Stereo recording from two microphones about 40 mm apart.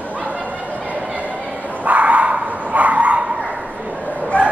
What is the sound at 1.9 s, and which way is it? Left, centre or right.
Bow-wow, right.